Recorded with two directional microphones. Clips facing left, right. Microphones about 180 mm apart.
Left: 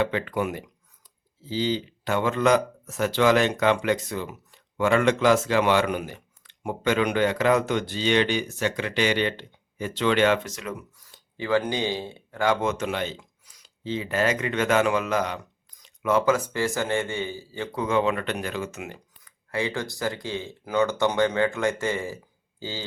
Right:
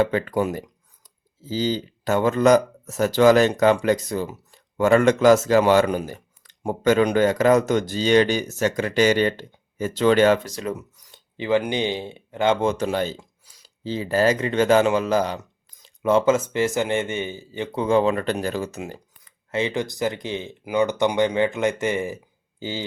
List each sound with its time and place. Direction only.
0.0 s speech: 40° right (ahead or behind)
10.9 s speech: 20° right (ahead or behind)